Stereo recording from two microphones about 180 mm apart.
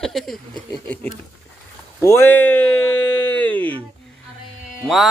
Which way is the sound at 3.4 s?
10° left (ahead or behind).